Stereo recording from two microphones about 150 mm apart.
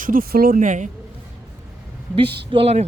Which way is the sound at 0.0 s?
70° right (ahead or behind).